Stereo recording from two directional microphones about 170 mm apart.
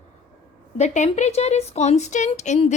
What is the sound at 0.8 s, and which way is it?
A woman's voice, 40° left (ahead or behind).